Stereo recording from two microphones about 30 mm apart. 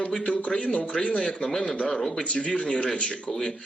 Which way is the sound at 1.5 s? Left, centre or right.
Centre.